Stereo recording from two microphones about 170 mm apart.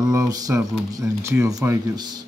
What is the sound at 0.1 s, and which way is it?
Speech, 20° right (ahead or behind).